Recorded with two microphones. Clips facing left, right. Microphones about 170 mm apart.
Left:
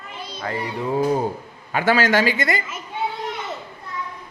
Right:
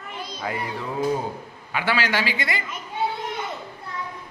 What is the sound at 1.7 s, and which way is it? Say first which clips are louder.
Speech: left 6 dB; 45° left (ahead or behind).